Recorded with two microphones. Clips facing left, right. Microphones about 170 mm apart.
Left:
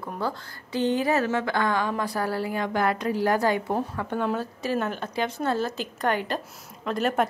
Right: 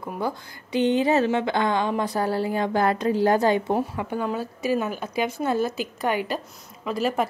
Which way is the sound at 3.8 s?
10° right (ahead or behind).